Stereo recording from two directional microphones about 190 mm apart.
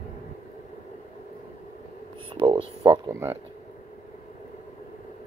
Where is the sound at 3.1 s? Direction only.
15° right (ahead or behind).